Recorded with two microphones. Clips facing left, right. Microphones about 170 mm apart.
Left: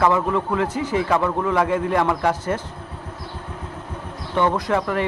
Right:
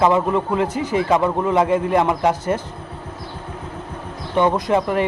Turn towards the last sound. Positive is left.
turn(degrees=-20)  # may be behind; listen again after turning